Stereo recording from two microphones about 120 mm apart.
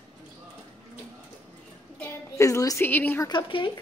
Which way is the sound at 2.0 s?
20° left (ahead or behind).